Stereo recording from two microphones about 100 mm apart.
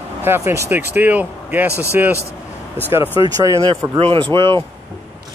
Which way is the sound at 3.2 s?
35° right (ahead or behind).